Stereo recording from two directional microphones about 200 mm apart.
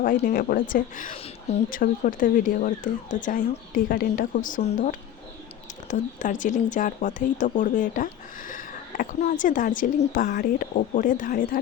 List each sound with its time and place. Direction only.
0.2 s a woman's voice: 45° left (ahead or behind)